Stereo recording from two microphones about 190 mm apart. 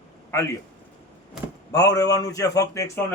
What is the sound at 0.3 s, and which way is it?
Speech, 15° left (ahead or behind).